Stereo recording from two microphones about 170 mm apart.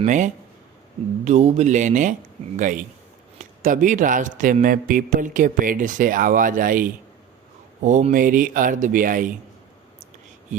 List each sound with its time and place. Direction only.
0.0 s speech: 45° right (ahead or behind)